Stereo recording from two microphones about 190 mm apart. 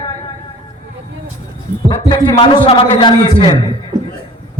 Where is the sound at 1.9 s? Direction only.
25° left (ahead or behind).